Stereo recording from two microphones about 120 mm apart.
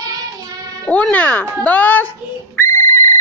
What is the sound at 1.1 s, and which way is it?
Speech, 15° left (ahead or behind).